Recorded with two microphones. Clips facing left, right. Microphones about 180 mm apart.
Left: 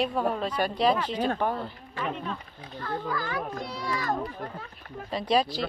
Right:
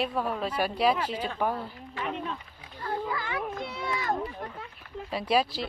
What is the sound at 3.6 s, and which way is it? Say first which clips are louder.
Speech: left 1 dB; 25° right (ahead or behind).